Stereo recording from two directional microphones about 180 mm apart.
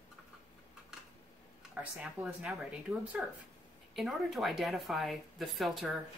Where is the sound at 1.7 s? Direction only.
5° right (ahead or behind).